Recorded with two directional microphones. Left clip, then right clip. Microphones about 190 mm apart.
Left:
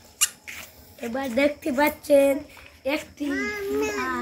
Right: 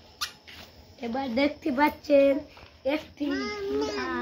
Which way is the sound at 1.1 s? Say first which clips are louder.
Left 4 dB; 45° right (ahead or behind).